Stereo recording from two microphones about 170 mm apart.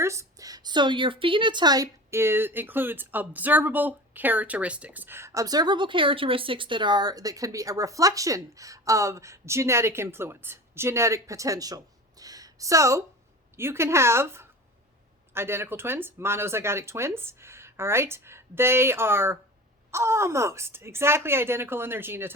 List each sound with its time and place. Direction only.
0.0 s a woman's voice: 15° right (ahead or behind)